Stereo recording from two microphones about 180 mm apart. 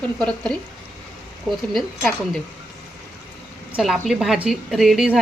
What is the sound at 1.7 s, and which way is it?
Speech, centre (ahead or behind).